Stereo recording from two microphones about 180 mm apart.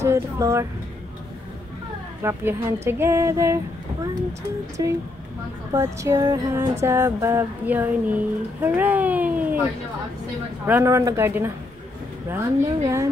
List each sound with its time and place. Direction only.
0.0 s female singing: 15° right (ahead or behind)
2.2 s female singing: 15° right (ahead or behind)
4.8 s speech: 20° right (ahead or behind)
5.7 s female singing: 15° right (ahead or behind)
10.7 s female singing: 15° right (ahead or behind)